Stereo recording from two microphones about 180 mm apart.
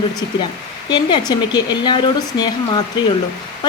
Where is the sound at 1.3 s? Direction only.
25° left (ahead or behind).